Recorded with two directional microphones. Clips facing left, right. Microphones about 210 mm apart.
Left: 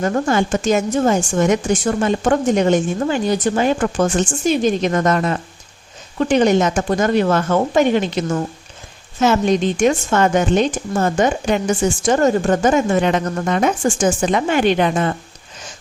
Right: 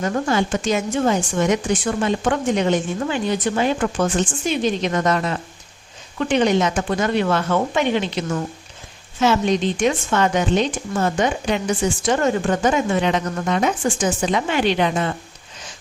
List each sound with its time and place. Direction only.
0.0 s a woman's voice: 50° left (ahead or behind)